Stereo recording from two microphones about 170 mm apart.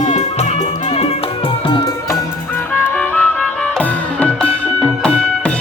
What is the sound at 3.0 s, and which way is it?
Music, 10° left (ahead or behind).